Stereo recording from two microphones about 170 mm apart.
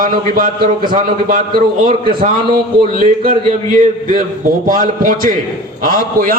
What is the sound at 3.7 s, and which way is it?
A man's voice, 50° right (ahead or behind).